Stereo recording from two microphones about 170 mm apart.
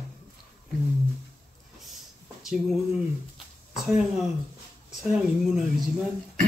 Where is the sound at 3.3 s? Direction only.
Centre (ahead or behind).